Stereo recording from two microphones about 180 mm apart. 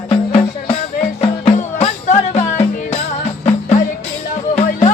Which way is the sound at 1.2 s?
35° left (ahead or behind).